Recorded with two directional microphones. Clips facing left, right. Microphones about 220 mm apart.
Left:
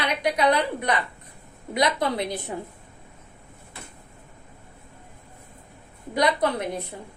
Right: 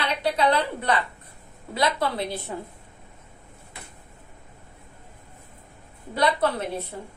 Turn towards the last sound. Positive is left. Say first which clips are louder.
# even
turn(degrees=15)  # may be behind; listen again after turning